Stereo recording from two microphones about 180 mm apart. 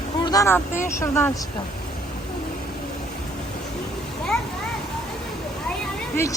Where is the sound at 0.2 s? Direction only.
20° left (ahead or behind).